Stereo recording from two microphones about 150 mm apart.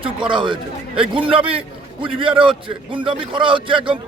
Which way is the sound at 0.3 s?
35° right (ahead or behind).